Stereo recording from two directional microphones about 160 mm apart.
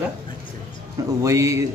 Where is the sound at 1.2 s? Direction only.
20° right (ahead or behind).